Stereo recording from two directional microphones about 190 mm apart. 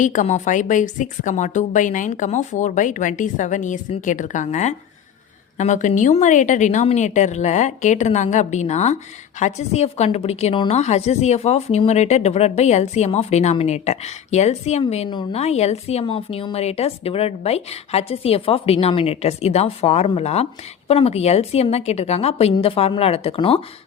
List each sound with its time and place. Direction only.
0.0 s a woman's voice: 40° left (ahead or behind)